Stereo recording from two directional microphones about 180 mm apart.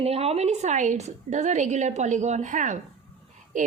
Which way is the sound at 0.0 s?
35° right (ahead or behind).